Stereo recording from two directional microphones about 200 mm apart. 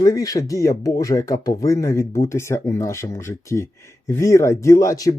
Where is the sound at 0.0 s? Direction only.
20° left (ahead or behind).